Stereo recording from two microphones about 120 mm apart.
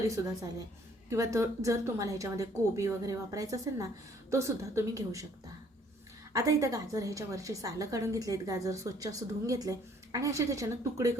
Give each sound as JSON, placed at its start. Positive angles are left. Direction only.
{"t": 1.1, "sound": "a woman's voice", "side_deg": -25}
{"t": 6.3, "sound": "a woman's voice", "side_deg": -30}